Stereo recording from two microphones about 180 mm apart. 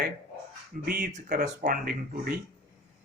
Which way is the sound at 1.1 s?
45° right (ahead or behind).